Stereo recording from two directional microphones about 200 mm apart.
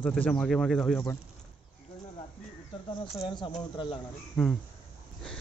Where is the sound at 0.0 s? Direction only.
5° left (ahead or behind).